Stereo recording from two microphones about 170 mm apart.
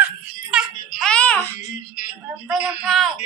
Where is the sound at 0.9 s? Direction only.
5° left (ahead or behind).